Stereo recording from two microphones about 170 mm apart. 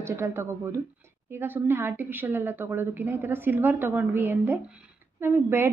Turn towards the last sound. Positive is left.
turn(degrees=-15)  # may be behind; listen again after turning